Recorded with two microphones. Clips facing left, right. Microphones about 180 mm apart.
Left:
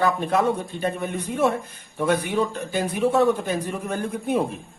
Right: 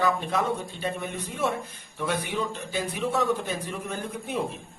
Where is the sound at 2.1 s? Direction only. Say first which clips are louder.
Left 7 dB; 50° left (ahead or behind).